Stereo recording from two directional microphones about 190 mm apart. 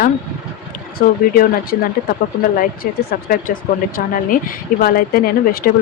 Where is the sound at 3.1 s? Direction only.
50° left (ahead or behind).